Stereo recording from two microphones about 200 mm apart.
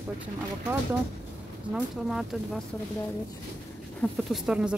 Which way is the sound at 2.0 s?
Centre (ahead or behind).